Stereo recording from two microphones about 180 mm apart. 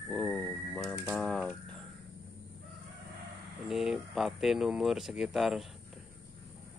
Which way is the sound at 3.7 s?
Centre (ahead or behind).